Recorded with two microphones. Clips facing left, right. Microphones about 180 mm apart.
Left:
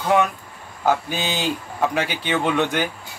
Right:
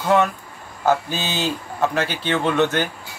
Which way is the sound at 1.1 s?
15° left (ahead or behind).